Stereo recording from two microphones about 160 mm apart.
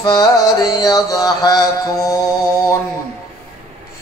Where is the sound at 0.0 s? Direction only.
25° left (ahead or behind).